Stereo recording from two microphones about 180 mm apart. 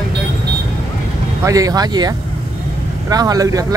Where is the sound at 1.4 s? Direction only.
20° right (ahead or behind).